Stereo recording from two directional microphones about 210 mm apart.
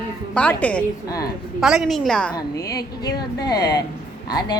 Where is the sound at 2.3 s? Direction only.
20° left (ahead or behind).